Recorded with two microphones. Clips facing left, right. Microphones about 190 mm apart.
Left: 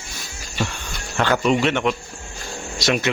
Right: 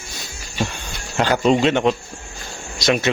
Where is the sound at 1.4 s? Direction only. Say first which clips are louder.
Right 6 dB; 25° right (ahead or behind).